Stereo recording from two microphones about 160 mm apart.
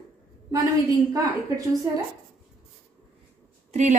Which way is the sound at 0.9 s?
20° right (ahead or behind).